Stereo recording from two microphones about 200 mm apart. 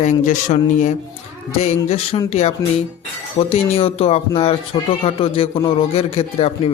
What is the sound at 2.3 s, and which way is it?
Speech, 30° left (ahead or behind).